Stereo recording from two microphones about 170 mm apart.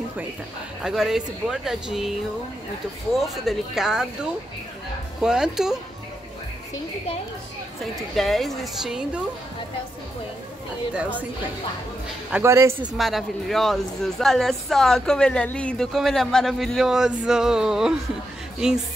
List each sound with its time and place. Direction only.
0.8 s speech: centre (ahead or behind)
3.2 s speech: centre (ahead or behind)
5.2 s speech: 5° right (ahead or behind)
7.8 s speech: centre (ahead or behind)
11.0 s a man's voice: 10° right (ahead or behind)
12.3 s a man's voice: 15° right (ahead or behind)
12.9 s speech: centre (ahead or behind)